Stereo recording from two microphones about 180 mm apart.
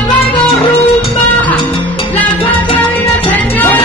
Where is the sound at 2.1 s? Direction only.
10° left (ahead or behind).